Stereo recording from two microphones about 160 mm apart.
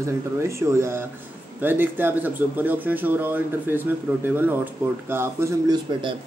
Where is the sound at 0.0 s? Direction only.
15° right (ahead or behind).